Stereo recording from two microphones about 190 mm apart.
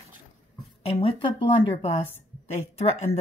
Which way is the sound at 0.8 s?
30° left (ahead or behind).